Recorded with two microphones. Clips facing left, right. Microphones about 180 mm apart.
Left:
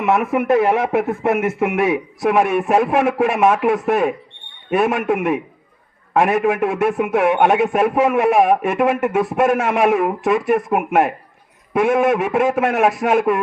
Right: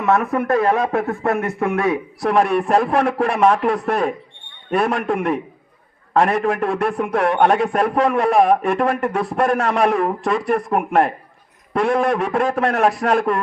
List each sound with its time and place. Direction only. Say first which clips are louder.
0.0 s a man's voice: left 1 dB; 20° left (ahead or behind)
2.5 s a man's voice: left 1 dB; 5° left (ahead or behind)